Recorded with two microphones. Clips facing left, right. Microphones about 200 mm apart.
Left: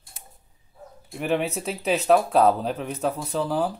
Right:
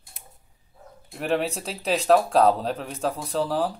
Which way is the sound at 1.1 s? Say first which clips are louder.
Even; centre (ahead or behind).